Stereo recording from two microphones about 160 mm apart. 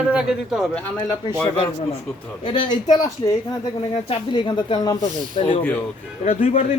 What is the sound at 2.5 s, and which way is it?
Speech, 30° left (ahead or behind).